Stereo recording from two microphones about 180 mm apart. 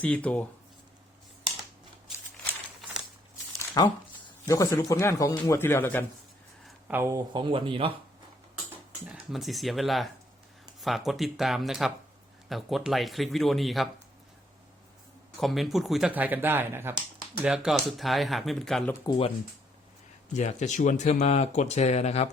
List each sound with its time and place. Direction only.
0.0 s speech: 10° left (ahead or behind)
3.8 s speech: 20° left (ahead or behind)
6.7 s a sound: 10° right (ahead or behind)
7.3 s speech: 25° right (ahead or behind)
8.7 s speech: 5° right (ahead or behind)
15.4 s speech: centre (ahead or behind)
19.0 s speech: 30° left (ahead or behind)
20.3 s speech: 40° left (ahead or behind)